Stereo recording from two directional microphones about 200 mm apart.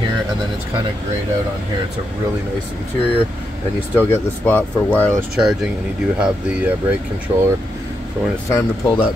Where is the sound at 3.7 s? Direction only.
10° left (ahead or behind).